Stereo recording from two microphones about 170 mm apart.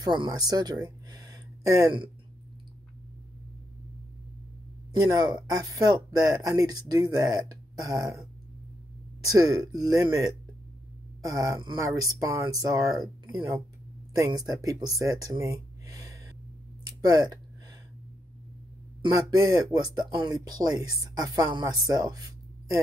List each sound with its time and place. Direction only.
0.0 s speech: 25° right (ahead or behind)
5.1 s speech: 20° right (ahead or behind)
9.2 s speech: 20° right (ahead or behind)
15.0 s a sound: 20° right (ahead or behind)
17.0 s speech: 20° right (ahead or behind)
19.0 s speech: 20° right (ahead or behind)